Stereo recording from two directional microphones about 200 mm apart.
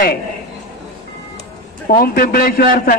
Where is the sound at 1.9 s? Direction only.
45° left (ahead or behind).